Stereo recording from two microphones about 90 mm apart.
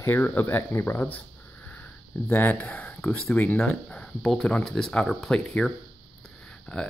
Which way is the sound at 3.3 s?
20° left (ahead or behind).